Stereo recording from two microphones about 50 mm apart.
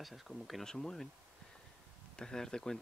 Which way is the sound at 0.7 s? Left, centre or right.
Centre.